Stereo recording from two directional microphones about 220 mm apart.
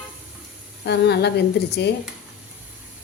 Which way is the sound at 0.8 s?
50° left (ahead or behind).